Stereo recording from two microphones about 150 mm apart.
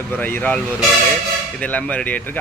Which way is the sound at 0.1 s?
10° left (ahead or behind).